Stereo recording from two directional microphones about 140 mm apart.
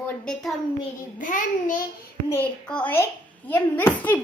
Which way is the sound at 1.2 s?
70° left (ahead or behind).